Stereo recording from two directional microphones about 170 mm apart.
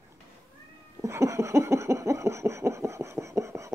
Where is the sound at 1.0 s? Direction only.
15° right (ahead or behind).